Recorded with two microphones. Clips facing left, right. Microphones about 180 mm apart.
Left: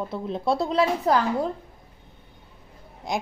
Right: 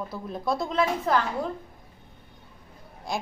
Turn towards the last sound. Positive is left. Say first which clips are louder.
# left 3 dB
turn(degrees=20)  # may be behind; listen again after turning